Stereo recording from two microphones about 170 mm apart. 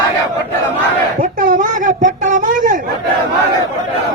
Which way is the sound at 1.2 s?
55° right (ahead or behind).